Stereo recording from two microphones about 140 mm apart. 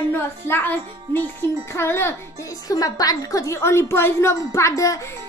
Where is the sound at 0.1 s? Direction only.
15° left (ahead or behind).